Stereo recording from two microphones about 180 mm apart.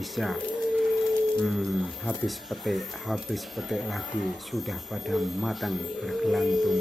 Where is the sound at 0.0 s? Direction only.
Centre (ahead or behind).